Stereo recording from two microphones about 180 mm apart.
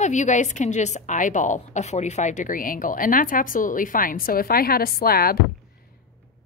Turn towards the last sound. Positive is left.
turn(degrees=55)  # may be behind; listen again after turning